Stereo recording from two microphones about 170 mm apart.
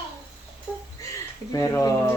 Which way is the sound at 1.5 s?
20° left (ahead or behind).